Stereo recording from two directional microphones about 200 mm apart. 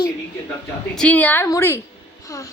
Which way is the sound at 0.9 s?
5° left (ahead or behind).